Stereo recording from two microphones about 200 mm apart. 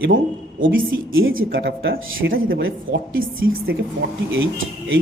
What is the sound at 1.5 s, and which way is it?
Speech, 65° right (ahead or behind).